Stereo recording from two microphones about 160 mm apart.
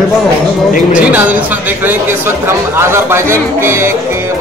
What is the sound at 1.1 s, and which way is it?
Speech, 10° right (ahead or behind).